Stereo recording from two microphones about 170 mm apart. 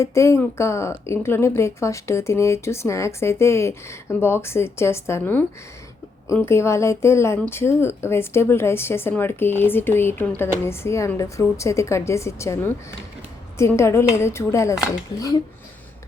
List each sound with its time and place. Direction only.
0.0 s a woman's voice: 15° left (ahead or behind)